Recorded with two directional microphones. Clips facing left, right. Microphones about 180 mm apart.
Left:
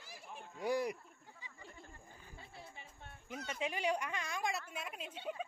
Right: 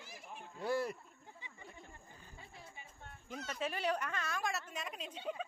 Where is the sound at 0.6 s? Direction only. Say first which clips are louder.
Left 1 dB; 15° left (ahead or behind).